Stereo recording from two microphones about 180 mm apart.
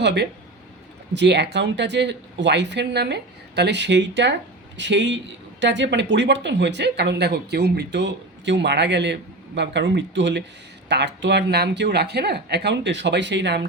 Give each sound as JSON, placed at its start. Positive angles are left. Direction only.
{"t": 0.0, "sound": "speech", "side_deg": -70}